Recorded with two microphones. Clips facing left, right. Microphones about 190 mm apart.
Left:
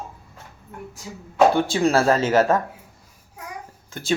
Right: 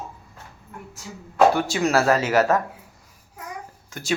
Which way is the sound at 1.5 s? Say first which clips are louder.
Left 2 dB; 30° left (ahead or behind).